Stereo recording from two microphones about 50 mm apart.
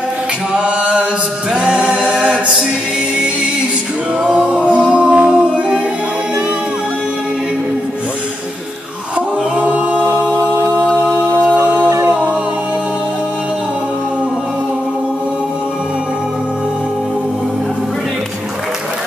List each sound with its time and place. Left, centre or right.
0.6 s mantra: right
1.5 s a capella: centre
4.2 s music: centre
9.6 s a capella: right